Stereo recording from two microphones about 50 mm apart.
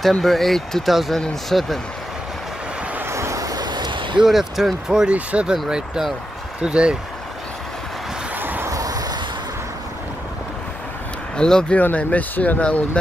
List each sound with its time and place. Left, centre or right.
0.2 s speech: centre
3.1 s vehicle: right
4.2 s speech: centre
5.1 s speech: right
5.7 s speech: centre
8.4 s vehicle: right
11.3 s speech: centre
11.7 s speech: left